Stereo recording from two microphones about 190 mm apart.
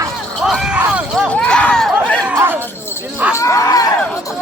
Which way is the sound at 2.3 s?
10° right (ahead or behind).